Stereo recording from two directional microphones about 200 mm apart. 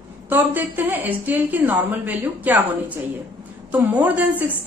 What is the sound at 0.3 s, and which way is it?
A woman's voice, 10° right (ahead or behind).